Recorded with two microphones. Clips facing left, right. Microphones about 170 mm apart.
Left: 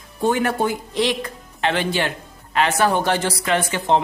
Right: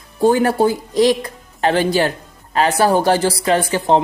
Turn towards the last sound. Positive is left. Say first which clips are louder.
# right 4 dB
turn(degrees=-35)  # may be behind; listen again after turning